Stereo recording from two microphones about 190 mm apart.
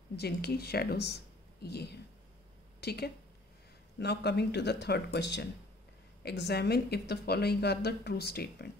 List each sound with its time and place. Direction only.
0.1 s speech: 55° left (ahead or behind)